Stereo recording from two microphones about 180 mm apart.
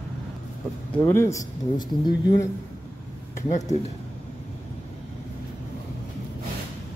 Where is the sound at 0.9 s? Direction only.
15° left (ahead or behind).